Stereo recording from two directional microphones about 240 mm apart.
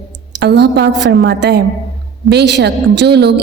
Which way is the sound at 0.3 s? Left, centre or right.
Right.